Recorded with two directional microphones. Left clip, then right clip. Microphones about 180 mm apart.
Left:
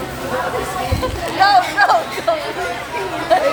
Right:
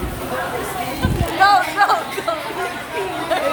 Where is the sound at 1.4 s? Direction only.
20° left (ahead or behind).